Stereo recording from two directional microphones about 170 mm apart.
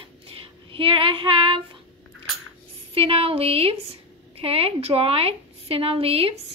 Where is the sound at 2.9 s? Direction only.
35° right (ahead or behind).